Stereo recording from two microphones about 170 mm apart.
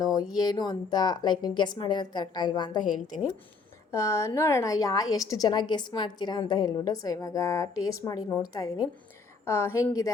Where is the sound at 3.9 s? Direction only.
15° left (ahead or behind).